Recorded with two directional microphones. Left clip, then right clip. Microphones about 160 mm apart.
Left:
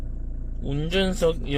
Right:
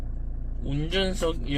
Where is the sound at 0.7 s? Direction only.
40° left (ahead or behind).